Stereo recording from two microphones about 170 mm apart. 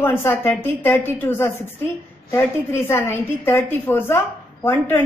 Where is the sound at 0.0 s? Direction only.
15° left (ahead or behind).